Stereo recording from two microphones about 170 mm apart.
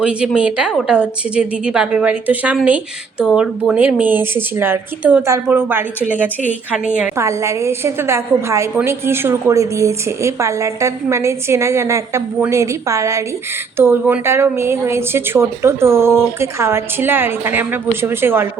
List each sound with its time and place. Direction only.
0.0 s a woman's voice: 5° right (ahead or behind)
7.2 s a woman's voice: 15° right (ahead or behind)